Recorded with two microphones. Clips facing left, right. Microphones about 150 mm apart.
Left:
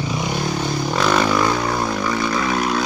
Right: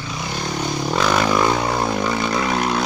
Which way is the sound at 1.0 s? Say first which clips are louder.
Left 2 dB; 10° right (ahead or behind).